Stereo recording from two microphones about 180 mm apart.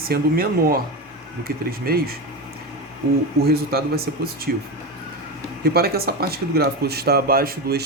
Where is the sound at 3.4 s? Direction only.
60° right (ahead or behind).